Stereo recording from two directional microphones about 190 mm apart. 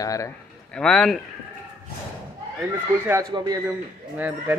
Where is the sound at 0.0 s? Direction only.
15° left (ahead or behind).